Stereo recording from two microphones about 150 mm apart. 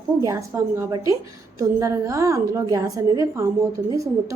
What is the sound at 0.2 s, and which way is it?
A woman's voice, 20° right (ahead or behind).